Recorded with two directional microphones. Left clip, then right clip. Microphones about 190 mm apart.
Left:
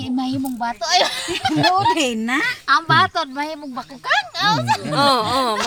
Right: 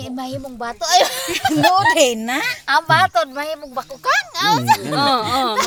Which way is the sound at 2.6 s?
65° right (ahead or behind).